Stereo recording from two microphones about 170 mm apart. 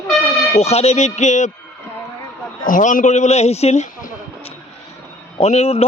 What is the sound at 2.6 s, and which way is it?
A man's voice, 50° left (ahead or behind).